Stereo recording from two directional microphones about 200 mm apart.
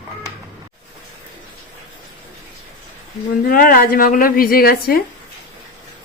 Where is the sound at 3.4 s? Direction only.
45° left (ahead or behind).